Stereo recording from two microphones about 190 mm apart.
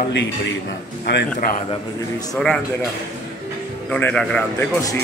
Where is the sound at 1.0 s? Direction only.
60° left (ahead or behind).